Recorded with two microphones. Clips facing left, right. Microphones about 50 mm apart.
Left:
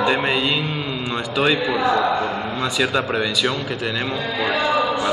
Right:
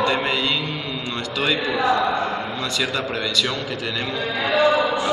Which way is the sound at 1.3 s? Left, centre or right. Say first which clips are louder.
Left 3 dB; centre.